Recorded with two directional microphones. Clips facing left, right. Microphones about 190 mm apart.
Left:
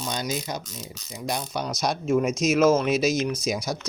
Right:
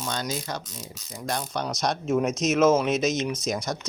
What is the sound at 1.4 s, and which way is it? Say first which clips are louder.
Speech: even; centre (ahead or behind).